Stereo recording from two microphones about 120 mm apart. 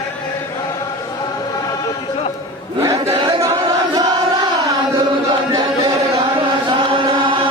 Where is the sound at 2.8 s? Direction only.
25° right (ahead or behind).